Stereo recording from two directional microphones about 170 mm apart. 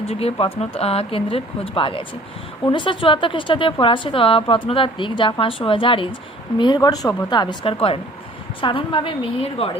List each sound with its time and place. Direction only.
0.0 s a woman's voice: 35° left (ahead or behind)